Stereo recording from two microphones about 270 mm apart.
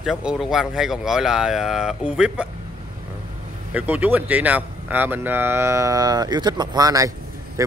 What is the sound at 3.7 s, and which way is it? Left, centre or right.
Speech, centre.